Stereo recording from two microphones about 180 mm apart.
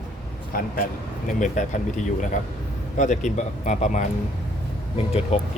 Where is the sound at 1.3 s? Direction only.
45° left (ahead or behind).